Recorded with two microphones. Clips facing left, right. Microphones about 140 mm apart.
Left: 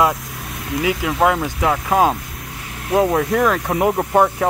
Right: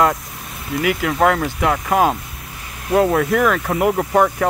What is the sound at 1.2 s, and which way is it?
Speech, 15° left (ahead or behind).